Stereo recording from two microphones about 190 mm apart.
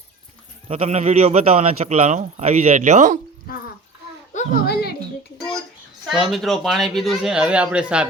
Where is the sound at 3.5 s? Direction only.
50° left (ahead or behind).